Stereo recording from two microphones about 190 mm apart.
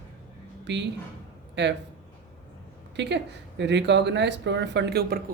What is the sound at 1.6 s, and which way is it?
Speech, 65° right (ahead or behind).